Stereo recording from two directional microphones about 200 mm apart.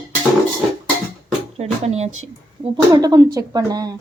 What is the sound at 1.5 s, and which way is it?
Speech, 30° right (ahead or behind).